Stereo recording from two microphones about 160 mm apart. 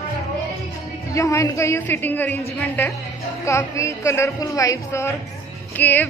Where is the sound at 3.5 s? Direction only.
20° left (ahead or behind).